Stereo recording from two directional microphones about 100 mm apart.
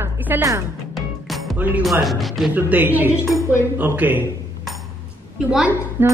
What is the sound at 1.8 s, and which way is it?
Speech, centre (ahead or behind).